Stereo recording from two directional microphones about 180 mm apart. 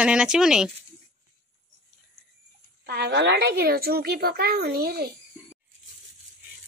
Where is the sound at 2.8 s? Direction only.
70° right (ahead or behind).